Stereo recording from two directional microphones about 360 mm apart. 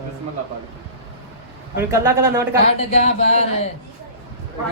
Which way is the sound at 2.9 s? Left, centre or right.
Centre.